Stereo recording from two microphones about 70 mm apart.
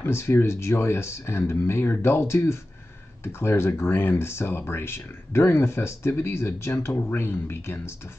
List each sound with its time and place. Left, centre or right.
0.0 s speech: left